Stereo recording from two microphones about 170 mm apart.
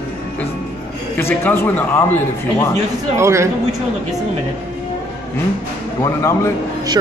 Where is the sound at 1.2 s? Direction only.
10° left (ahead or behind).